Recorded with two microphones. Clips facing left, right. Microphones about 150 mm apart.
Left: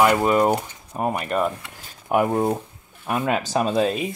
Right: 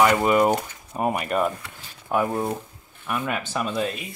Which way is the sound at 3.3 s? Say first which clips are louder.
Left 9 dB; 35° left (ahead or behind).